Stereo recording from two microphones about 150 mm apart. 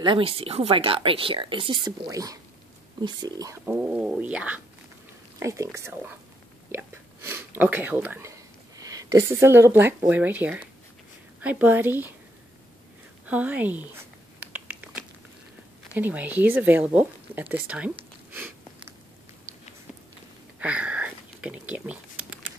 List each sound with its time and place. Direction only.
0.0 s speech: 35° right (ahead or behind)
3.6 s speech: 10° right (ahead or behind)
5.4 s speech: 20° right (ahead or behind)
13.2 s typing: 10° right (ahead or behind)
15.9 s speech: 10° right (ahead or behind)
20.5 s a sound: 10° right (ahead or behind)